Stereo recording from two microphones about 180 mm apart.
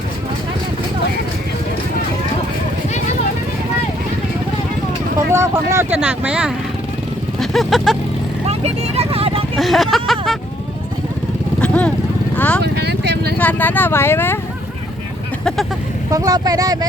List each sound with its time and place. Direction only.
5.3 s speech: 15° right (ahead or behind)
7.3 s vehicle: centre (ahead or behind)
8.4 s vehicle: 35° right (ahead or behind)
9.6 s a sound: centre (ahead or behind)
11.6 s vehicle: 5° left (ahead or behind)
12.6 s vehicle: 65° right (ahead or behind)
13.4 s speech: 10° left (ahead or behind)
16.0 s speech: 20° right (ahead or behind)